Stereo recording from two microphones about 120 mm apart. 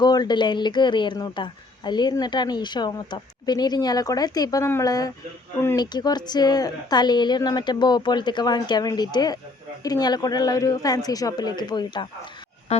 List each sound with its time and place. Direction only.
0.0 s speech: 35° left (ahead or behind)